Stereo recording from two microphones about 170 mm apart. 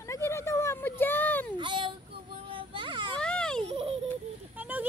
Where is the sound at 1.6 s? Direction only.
30° right (ahead or behind).